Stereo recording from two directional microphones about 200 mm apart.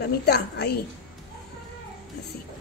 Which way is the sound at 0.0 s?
55° left (ahead or behind).